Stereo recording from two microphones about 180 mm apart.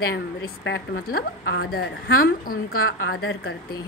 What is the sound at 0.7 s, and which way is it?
A woman's voice, 60° left (ahead or behind).